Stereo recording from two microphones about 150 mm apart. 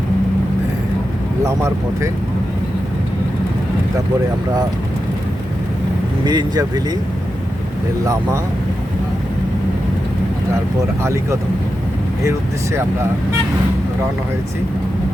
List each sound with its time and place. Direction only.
1.5 s speech: 20° right (ahead or behind)
6.2 s speech: 25° right (ahead or behind)
11.0 s speech: 20° right (ahead or behind)